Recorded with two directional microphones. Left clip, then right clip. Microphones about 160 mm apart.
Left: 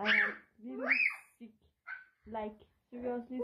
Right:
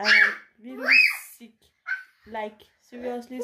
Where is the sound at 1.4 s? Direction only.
20° right (ahead or behind).